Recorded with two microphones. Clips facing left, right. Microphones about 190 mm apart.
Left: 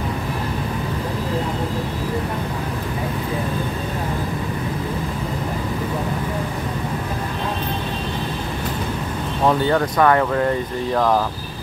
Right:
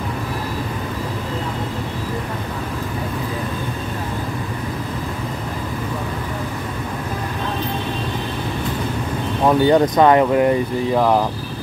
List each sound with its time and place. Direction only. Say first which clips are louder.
9.5 s speech: right 5 dB; 20° right (ahead or behind)